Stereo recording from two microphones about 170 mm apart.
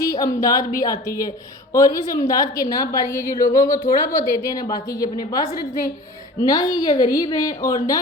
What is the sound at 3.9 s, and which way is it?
A woman's voice, 20° left (ahead or behind).